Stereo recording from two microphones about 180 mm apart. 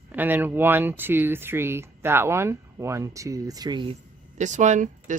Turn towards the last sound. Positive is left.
turn(degrees=-45)  # may be behind; listen again after turning